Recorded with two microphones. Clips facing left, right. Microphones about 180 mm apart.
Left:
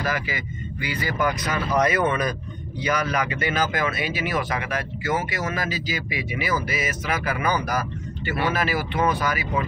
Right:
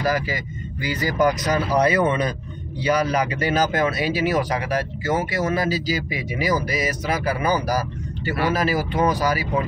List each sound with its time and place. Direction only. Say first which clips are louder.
0.0 s speech: right 4 dB; 40° right (ahead or behind)